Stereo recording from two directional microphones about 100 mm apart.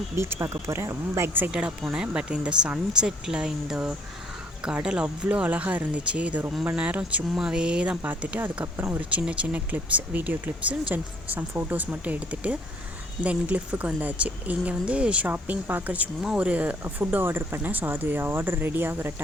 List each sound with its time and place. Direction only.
0.2 s speech: 25° right (ahead or behind)
1.5 s speech: 10° right (ahead or behind)